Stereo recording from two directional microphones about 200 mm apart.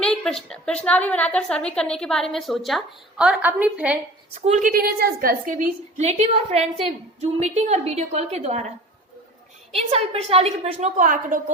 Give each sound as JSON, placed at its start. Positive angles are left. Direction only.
{"t": 0.0, "sound": "a woman's voice", "side_deg": 5}
{"t": 4.4, "sound": "a woman's voice", "side_deg": -35}
{"t": 6.0, "sound": "a woman's voice", "side_deg": -35}
{"t": 9.9, "sound": "a woman's voice", "side_deg": -30}